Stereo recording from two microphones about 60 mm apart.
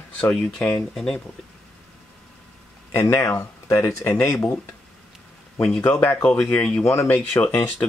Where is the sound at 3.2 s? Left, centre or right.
Left.